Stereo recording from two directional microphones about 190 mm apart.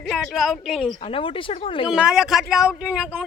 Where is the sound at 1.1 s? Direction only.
30° left (ahead or behind).